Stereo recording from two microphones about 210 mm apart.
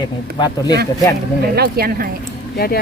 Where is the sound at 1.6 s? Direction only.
45° right (ahead or behind).